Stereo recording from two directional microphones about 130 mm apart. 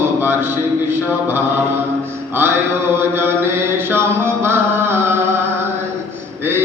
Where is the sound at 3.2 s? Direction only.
15° right (ahead or behind).